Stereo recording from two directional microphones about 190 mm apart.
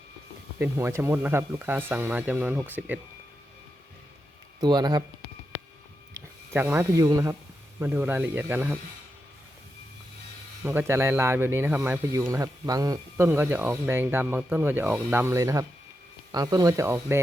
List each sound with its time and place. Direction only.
0.6 s speech: 15° right (ahead or behind)
4.6 s speech: 20° right (ahead or behind)
6.1 s speech: 10° right (ahead or behind)
10.6 s speech: 10° right (ahead or behind)